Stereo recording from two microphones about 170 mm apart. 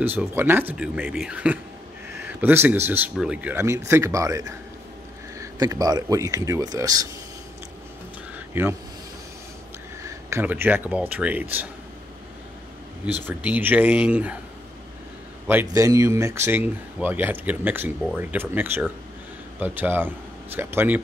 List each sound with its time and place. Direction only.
0.0 s speech: 10° right (ahead or behind)
8.5 s speech: 15° right (ahead or behind)
10.0 s speech: 10° right (ahead or behind)
13.4 s speech: 10° right (ahead or behind)
15.4 s speech: 15° right (ahead or behind)